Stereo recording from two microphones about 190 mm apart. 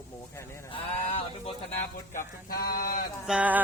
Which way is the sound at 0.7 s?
30° left (ahead or behind).